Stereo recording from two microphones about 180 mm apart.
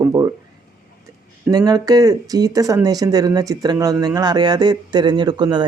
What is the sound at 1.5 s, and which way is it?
A man's voice, 20° right (ahead or behind).